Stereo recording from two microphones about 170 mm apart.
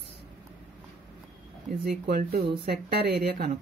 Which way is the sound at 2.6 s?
75° right (ahead or behind).